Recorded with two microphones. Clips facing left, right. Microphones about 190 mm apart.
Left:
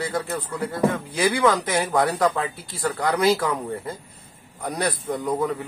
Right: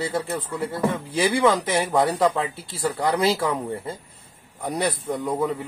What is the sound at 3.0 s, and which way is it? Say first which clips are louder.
Speech: even; 25° right (ahead or behind).